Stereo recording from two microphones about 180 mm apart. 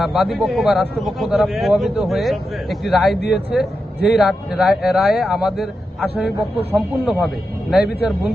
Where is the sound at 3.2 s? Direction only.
70° left (ahead or behind).